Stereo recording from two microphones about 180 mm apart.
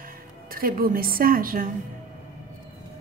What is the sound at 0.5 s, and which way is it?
A woman's voice, 55° right (ahead or behind).